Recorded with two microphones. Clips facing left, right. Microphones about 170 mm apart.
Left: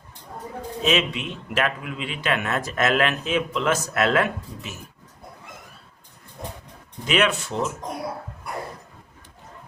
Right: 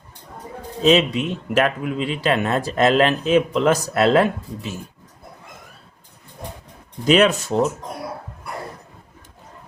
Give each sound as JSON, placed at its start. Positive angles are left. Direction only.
{"t": 0.8, "sound": "speech", "side_deg": -35}
{"t": 7.0, "sound": "speech", "side_deg": -40}